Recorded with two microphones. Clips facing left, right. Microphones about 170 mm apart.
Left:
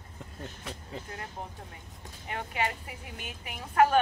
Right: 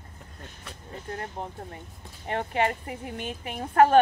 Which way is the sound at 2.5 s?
45° right (ahead or behind).